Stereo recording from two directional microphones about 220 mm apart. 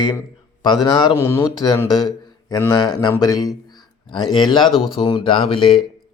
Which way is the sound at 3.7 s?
20° left (ahead or behind).